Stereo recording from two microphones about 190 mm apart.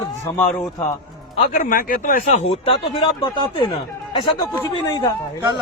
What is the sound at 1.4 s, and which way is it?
A man's voice, 40° left (ahead or behind).